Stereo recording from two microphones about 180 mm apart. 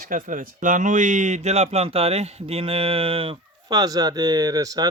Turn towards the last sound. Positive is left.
turn(degrees=-20)  # may be behind; listen again after turning